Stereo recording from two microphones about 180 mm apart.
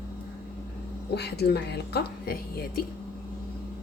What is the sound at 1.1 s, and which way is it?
A woman's voice, 65° left (ahead or behind).